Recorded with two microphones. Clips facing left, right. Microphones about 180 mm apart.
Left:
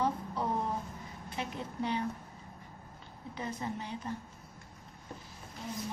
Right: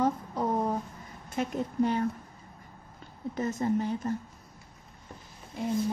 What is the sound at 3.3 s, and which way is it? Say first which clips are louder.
Speech: right 10 dB; 45° right (ahead or behind).